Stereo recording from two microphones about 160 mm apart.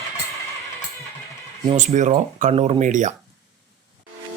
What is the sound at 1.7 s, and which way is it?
Speech, 50° right (ahead or behind).